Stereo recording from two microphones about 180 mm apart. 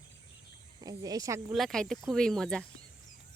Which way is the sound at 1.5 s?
Centre (ahead or behind).